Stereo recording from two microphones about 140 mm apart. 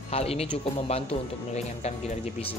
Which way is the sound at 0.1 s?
45° left (ahead or behind).